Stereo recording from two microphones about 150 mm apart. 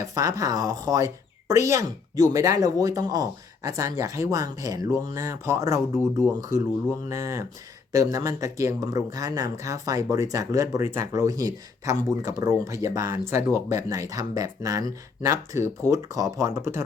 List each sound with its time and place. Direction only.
0.0 s speech: 25° right (ahead or behind)